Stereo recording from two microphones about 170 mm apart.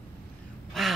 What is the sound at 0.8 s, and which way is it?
Speech, centre (ahead or behind).